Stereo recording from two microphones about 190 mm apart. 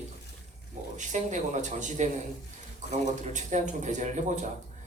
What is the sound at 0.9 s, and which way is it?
Speech, 40° right (ahead or behind).